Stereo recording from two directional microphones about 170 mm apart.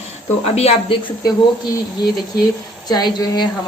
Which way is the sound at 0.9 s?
30° left (ahead or behind).